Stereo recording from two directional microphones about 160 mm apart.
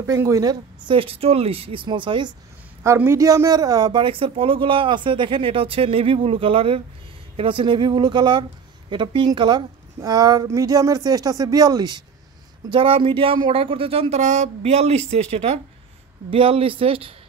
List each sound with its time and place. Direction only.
0.0 s a woman's voice: 20° right (ahead or behind)
0.8 s speech: 35° right (ahead or behind)
2.8 s a woman's voice: 15° right (ahead or behind); by 17.1 s 35° right (ahead or behind)